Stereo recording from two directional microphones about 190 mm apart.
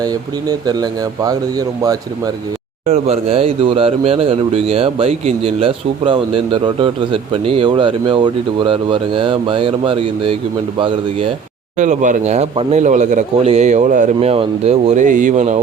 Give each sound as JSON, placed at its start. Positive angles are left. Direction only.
{"t": 0.0, "sound": "speech", "side_deg": -20}
{"t": 2.8, "sound": "speech", "side_deg": -35}
{"t": 11.8, "sound": "a man's voice", "side_deg": -40}